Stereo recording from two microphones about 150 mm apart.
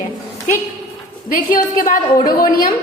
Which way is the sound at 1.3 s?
65° left (ahead or behind).